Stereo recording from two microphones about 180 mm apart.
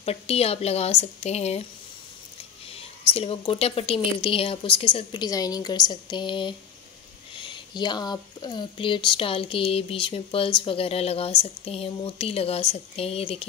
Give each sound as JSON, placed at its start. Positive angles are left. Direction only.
{"t": 0.0, "sound": "speech", "side_deg": 35}
{"t": 2.7, "sound": "a woman's voice", "side_deg": 30}